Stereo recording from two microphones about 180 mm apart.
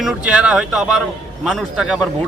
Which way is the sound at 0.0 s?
5° right (ahead or behind).